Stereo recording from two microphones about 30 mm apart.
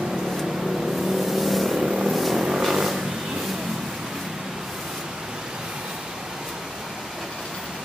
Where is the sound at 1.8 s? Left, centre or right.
Centre.